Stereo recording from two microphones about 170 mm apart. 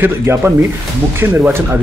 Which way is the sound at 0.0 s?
15° right (ahead or behind).